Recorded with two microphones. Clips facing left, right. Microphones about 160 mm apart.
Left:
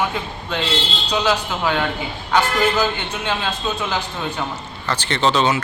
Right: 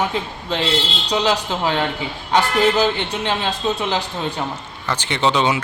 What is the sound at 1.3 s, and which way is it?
A man's voice, 30° right (ahead or behind).